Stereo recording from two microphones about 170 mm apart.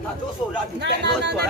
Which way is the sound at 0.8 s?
90° right.